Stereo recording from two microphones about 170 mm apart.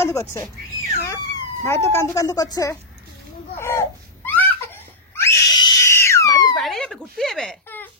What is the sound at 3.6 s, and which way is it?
Crying, 15° left (ahead or behind).